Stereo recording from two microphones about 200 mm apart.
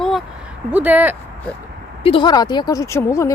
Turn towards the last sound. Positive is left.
turn(degrees=15)  # may be behind; listen again after turning